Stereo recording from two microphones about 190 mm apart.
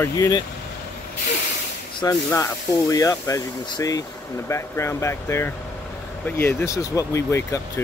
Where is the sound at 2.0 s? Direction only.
20° left (ahead or behind).